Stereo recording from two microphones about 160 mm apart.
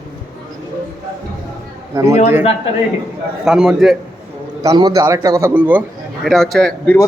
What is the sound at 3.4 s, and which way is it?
Speech, centre (ahead or behind).